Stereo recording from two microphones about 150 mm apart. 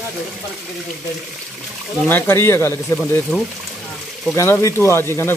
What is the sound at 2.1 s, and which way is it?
Speech, 15° left (ahead or behind).